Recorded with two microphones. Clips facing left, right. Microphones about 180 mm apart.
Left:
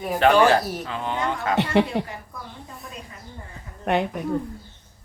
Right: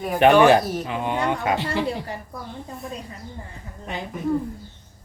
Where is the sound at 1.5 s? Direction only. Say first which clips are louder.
Left 4 dB; 65° left (ahead or behind).